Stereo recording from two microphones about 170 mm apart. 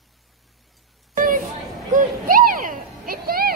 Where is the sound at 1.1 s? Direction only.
55° right (ahead or behind).